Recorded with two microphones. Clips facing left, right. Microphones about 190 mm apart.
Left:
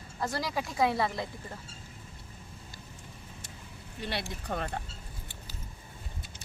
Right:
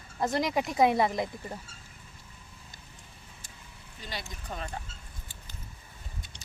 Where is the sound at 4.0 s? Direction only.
65° left (ahead or behind).